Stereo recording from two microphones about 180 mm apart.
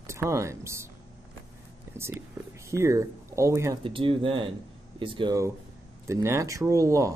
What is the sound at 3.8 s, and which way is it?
Speech, 30° right (ahead or behind).